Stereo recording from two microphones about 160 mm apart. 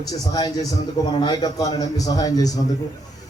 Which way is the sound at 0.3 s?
25° left (ahead or behind).